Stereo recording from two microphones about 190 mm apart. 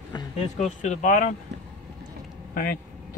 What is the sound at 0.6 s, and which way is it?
Speech, 40° left (ahead or behind).